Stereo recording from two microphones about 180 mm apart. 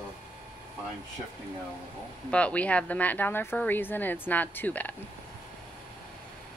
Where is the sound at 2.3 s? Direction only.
5° left (ahead or behind).